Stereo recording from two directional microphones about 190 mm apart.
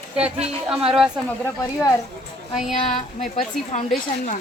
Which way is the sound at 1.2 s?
10° left (ahead or behind).